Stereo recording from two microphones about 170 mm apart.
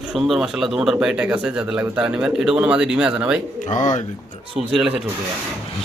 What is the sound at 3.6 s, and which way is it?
Speech, 45° left (ahead or behind).